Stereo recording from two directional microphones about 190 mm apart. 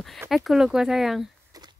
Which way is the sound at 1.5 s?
20° right (ahead or behind).